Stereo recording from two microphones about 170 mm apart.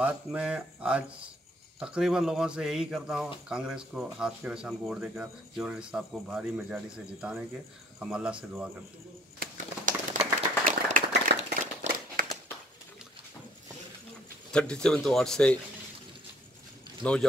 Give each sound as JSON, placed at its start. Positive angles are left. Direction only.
{"t": 0.0, "sound": "speech", "side_deg": -10}
{"t": 10.1, "sound": "clapping", "side_deg": -50}
{"t": 12.2, "sound": "a sound", "side_deg": -55}
{"t": 14.5, "sound": "speech", "side_deg": 5}
{"t": 17.0, "sound": "speech", "side_deg": 5}